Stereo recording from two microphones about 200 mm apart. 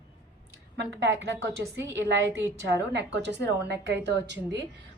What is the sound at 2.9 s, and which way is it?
A woman's voice, 60° right (ahead or behind).